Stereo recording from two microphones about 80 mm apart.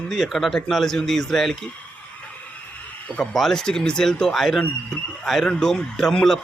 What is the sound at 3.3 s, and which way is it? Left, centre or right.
Speech, centre.